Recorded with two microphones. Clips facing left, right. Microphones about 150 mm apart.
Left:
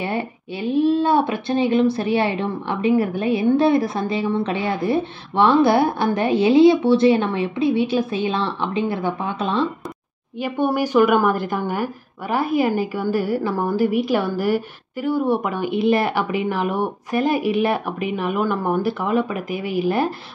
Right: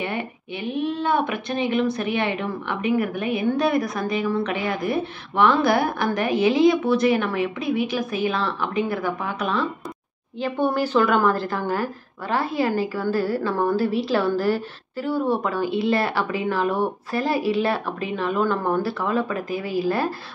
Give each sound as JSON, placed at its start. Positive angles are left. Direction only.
{"t": 0.0, "sound": "speech", "side_deg": 30}
{"t": 10.4, "sound": "a woman's voice", "side_deg": 10}